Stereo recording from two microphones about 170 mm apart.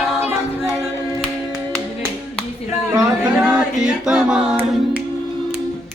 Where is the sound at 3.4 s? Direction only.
5° right (ahead or behind).